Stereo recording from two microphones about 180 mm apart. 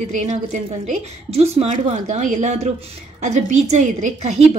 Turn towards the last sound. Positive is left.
turn(degrees=-40)  # may be behind; listen again after turning